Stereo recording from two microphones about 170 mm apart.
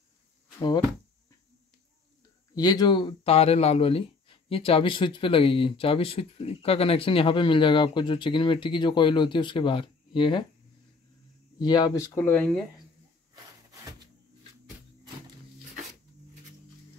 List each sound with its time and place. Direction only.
2.5 s speech: 25° left (ahead or behind)
11.5 s speech: 25° left (ahead or behind); by 12.6 s 10° left (ahead or behind)